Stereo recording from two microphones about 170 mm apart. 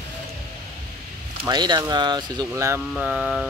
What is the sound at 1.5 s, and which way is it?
Speech, 25° right (ahead or behind).